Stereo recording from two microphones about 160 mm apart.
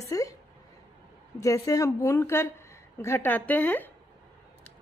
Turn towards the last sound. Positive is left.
turn(degrees=10)  # may be behind; listen again after turning